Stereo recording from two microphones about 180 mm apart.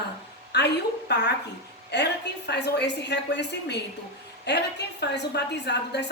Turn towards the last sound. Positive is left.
turn(degrees=70)  # may be behind; listen again after turning